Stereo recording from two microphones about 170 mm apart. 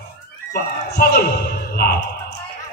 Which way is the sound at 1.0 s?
65° left (ahead or behind).